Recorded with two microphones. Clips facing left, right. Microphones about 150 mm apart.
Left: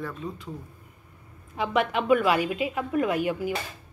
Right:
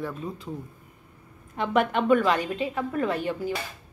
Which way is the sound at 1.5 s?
5° left (ahead or behind).